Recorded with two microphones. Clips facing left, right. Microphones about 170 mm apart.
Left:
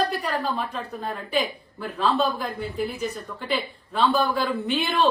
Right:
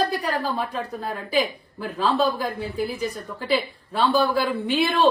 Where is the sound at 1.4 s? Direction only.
35° right (ahead or behind).